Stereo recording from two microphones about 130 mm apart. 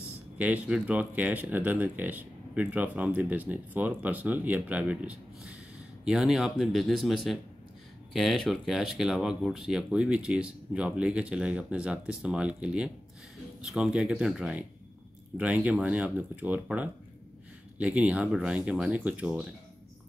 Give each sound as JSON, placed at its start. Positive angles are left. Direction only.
{"t": 0.4, "sound": "speech", "side_deg": -5}